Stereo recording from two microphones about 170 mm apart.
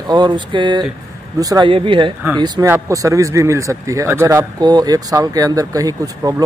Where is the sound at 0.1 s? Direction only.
25° right (ahead or behind).